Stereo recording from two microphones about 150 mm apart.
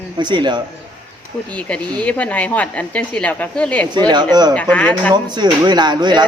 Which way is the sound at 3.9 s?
30° right (ahead or behind).